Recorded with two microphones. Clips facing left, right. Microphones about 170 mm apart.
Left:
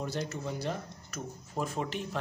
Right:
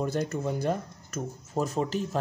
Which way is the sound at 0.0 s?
50° right (ahead or behind).